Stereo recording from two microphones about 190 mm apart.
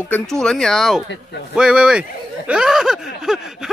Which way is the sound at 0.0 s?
5° left (ahead or behind).